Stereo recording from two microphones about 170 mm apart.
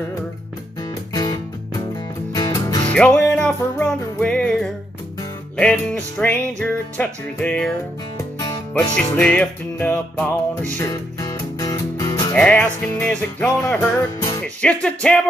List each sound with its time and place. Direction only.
0.8 s music: 25° left (ahead or behind)
2.9 s music: 5° left (ahead or behind)
8.4 s music: 20° left (ahead or behind)
9.2 s music: 5° left (ahead or behind)
10.8 s music: 20° left (ahead or behind)
12.4 s music: 5° left (ahead or behind)